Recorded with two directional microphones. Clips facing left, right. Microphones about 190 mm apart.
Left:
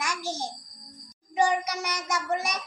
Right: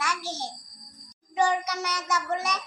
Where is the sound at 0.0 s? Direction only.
15° left (ahead or behind).